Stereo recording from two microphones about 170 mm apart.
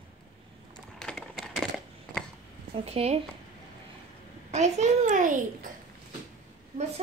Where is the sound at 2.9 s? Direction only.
35° right (ahead or behind).